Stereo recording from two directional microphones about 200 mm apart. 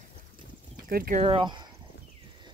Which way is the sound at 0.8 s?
45° right (ahead or behind).